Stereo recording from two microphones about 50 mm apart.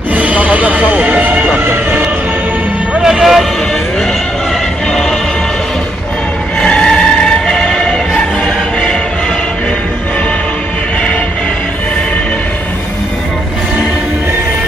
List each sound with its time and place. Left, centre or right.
0.1 s a sound: right
1.6 s vehicle: right
3.0 s vehicle: centre
6.6 s music: centre